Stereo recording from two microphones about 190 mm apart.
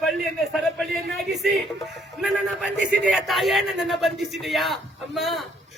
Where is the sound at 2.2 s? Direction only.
Centre (ahead or behind).